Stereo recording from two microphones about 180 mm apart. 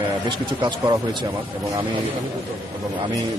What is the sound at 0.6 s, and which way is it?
Speech, 25° right (ahead or behind).